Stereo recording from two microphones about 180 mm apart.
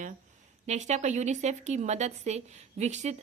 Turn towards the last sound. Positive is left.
turn(degrees=-40)  # may be behind; listen again after turning